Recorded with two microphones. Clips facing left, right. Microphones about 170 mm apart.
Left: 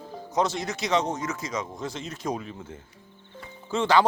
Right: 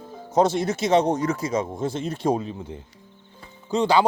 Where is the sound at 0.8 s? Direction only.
50° right (ahead or behind).